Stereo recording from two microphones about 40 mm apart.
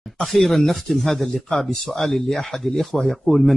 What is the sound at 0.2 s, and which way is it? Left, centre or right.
Speech, centre.